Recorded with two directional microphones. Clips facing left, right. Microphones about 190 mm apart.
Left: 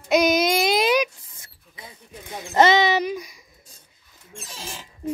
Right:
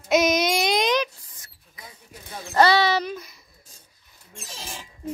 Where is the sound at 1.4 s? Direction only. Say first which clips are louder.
Left 3 dB; 25° left (ahead or behind).